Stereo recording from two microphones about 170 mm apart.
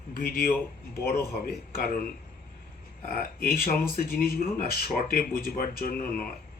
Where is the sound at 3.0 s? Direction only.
55° left (ahead or behind).